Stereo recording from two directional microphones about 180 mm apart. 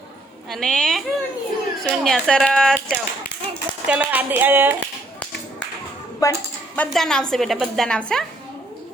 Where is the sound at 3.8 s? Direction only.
10° right (ahead or behind).